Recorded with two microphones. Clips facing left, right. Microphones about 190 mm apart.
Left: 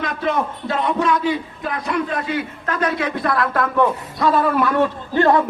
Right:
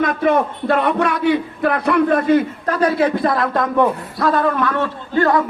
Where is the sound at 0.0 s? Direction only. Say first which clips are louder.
Right 5 dB; 55° right (ahead or behind); by 3.8 s 20° right (ahead or behind).